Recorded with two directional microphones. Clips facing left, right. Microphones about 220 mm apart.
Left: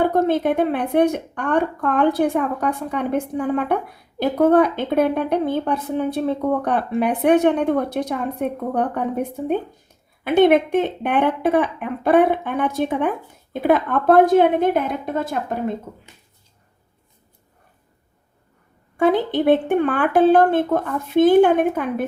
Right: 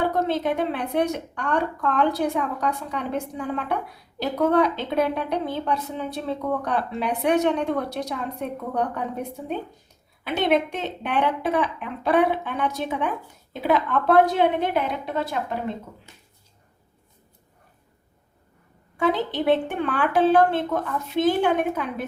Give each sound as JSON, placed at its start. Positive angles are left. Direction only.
{"t": 0.0, "sound": "a woman's voice", "side_deg": 50}
{"t": 18.9, "sound": "a woman's voice", "side_deg": 50}